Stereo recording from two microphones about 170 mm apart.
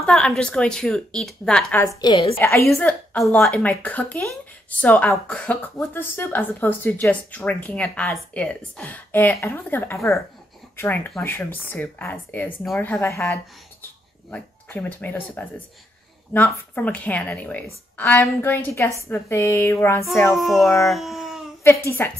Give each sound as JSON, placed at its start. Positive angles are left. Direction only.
{"t": 0.0, "sound": "speech", "side_deg": 5}
{"t": 2.3, "sound": "a woman's voice", "side_deg": 15}
{"t": 16.7, "sound": "a woman's voice", "side_deg": 10}
{"t": 20.4, "sound": "speech", "side_deg": 0}
{"t": 21.6, "sound": "a woman's voice", "side_deg": 15}